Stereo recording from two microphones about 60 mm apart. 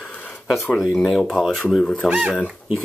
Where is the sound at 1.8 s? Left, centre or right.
Centre.